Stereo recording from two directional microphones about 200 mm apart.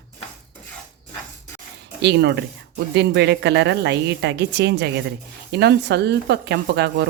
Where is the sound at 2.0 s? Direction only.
55° right (ahead or behind).